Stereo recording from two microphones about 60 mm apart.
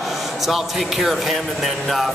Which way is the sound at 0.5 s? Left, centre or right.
Centre.